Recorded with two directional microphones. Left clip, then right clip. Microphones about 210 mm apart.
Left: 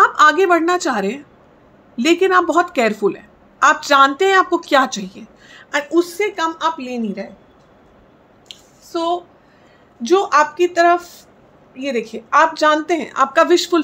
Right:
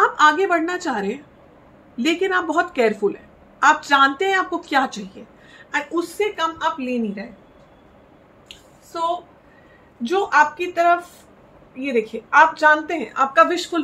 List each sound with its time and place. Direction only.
0.0 s a woman's voice: 50° left (ahead or behind)
8.9 s a woman's voice: 45° left (ahead or behind)